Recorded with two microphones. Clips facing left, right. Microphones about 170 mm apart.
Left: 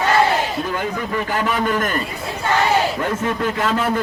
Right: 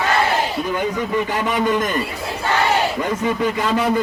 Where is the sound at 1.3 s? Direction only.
20° right (ahead or behind).